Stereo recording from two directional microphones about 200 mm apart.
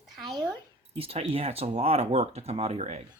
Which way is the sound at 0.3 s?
20° right (ahead or behind).